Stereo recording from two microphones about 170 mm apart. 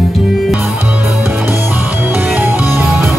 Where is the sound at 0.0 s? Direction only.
Centre (ahead or behind).